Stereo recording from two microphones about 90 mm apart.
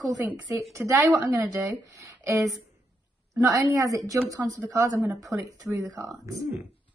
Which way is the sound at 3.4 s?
40° right (ahead or behind).